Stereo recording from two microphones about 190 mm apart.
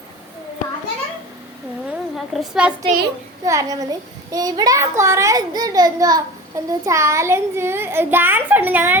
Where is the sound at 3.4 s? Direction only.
15° right (ahead or behind).